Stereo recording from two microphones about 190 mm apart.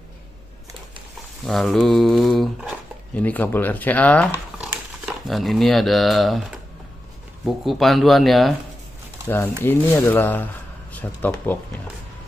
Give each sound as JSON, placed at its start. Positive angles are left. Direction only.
{"t": 1.4, "sound": "speech", "side_deg": 0}
{"t": 4.3, "sound": "crumpling", "side_deg": -15}
{"t": 5.0, "sound": "speech", "side_deg": 0}
{"t": 9.6, "sound": "speech", "side_deg": 10}